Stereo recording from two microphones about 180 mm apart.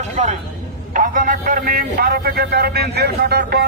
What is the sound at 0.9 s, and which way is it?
A man's voice, 50° right (ahead or behind).